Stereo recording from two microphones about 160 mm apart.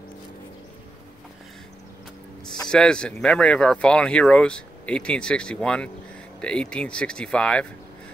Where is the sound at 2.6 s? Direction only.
5° left (ahead or behind).